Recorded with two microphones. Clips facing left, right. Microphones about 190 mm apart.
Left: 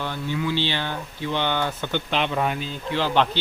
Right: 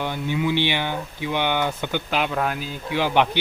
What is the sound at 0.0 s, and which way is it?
Speech, 15° right (ahead or behind).